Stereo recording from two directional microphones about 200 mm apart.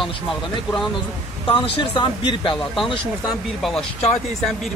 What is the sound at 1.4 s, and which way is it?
Speech, 25° left (ahead or behind).